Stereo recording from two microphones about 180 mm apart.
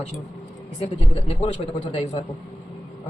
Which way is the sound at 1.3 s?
35° left (ahead or behind).